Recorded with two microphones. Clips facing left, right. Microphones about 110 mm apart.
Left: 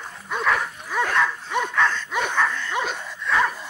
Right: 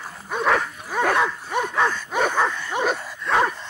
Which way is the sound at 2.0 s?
45° right (ahead or behind).